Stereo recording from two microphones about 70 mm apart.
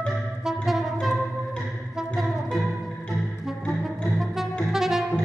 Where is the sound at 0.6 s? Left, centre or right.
Centre.